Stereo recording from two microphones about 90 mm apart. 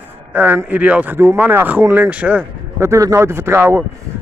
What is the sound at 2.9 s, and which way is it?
Speech, 35° right (ahead or behind).